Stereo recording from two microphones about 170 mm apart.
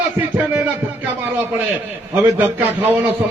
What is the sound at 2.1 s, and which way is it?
Speech, 10° right (ahead or behind).